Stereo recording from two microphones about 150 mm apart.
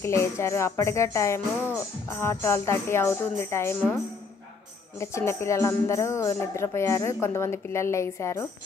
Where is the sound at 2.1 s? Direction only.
15° left (ahead or behind).